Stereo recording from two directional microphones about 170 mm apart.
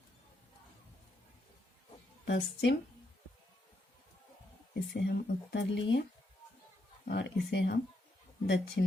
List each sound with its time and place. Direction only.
2.2 s speech: 90° left
4.7 s speech: 80° left
7.1 s speech: 90° left